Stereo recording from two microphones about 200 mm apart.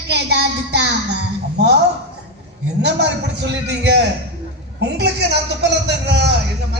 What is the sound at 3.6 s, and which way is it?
A woman's voice, 60° right (ahead or behind).